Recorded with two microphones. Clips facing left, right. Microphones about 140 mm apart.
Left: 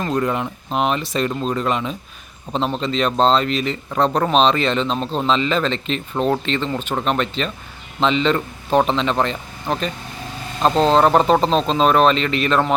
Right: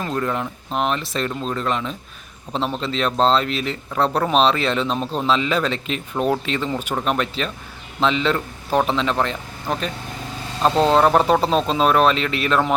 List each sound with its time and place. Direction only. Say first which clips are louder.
0.0 s speech: left 3 dB; centre (ahead or behind)